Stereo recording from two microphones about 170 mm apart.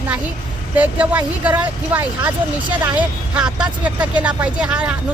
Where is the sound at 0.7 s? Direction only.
10° right (ahead or behind).